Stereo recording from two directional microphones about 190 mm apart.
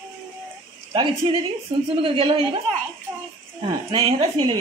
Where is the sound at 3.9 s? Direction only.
30° right (ahead or behind).